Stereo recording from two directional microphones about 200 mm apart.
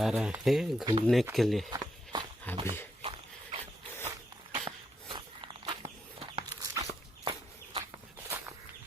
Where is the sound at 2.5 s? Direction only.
10° left (ahead or behind).